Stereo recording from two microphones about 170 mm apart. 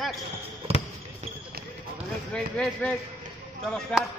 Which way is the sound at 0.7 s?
35° right (ahead or behind).